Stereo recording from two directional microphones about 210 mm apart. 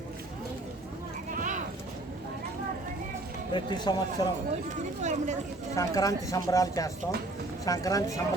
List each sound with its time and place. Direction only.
1.4 s a sound: 35° right (ahead or behind)
3.5 s a man's voice: 20° left (ahead or behind)
4.7 s speech: 35° right (ahead or behind)
5.7 s speech: 15° left (ahead or behind)